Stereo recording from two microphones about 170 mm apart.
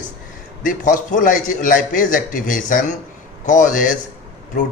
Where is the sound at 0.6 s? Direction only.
50° left (ahead or behind).